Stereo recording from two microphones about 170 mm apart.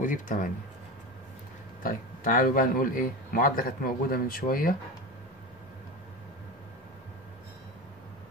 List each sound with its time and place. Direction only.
0.0 s speech: 50° left (ahead or behind)
1.8 s speech: 55° left (ahead or behind)